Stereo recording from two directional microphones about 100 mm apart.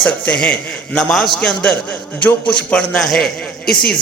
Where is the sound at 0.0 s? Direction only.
10° left (ahead or behind).